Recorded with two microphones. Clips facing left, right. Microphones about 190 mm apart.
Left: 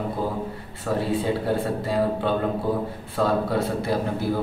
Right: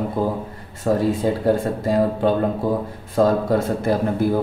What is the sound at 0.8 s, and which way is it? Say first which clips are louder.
A man's voice: right 5 dB; 45° right (ahead or behind).